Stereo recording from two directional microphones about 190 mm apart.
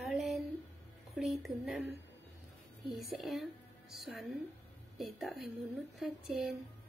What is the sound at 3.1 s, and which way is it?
Speech, centre (ahead or behind).